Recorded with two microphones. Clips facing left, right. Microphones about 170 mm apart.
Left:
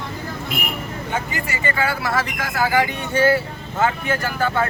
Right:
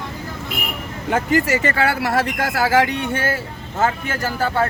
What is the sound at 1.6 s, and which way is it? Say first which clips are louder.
Speech: right 3 dB; 70° right (ahead or behind).